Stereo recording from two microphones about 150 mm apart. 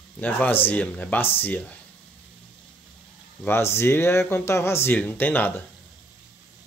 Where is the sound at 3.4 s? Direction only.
15° left (ahead or behind).